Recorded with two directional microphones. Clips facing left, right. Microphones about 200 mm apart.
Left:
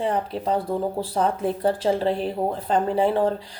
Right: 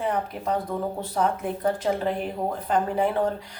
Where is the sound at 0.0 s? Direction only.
30° left (ahead or behind).